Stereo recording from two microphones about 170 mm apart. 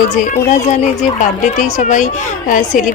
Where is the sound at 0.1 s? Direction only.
50° left (ahead or behind).